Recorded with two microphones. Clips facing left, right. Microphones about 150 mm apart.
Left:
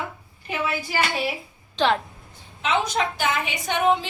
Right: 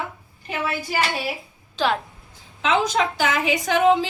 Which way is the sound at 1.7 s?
5° right (ahead or behind).